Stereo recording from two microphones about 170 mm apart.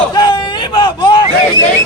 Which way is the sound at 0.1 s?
25° left (ahead or behind).